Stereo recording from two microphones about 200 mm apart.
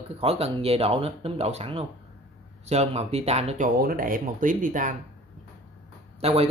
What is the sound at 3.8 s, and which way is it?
Speech, 45° right (ahead or behind).